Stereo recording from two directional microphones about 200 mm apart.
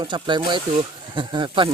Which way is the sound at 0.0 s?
20° right (ahead or behind).